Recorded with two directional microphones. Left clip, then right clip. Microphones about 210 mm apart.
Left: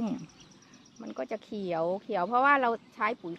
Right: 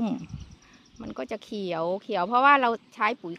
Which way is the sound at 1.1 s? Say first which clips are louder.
Right 2 dB; 55° right (ahead or behind).